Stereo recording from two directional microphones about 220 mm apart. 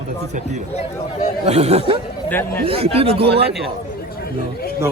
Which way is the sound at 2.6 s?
25° right (ahead or behind).